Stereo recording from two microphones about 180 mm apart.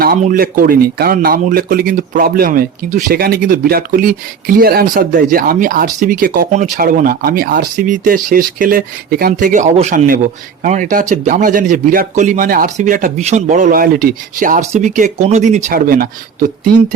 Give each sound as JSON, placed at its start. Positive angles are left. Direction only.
{"t": 0.0, "sound": "speech", "side_deg": -50}